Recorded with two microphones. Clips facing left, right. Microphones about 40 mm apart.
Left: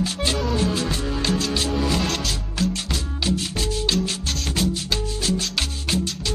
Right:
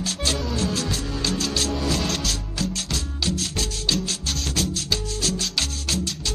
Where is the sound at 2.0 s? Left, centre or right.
Centre.